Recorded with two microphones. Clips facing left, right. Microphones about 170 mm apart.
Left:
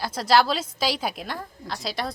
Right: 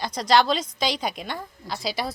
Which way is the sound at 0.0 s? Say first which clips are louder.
Even; 5° left (ahead or behind).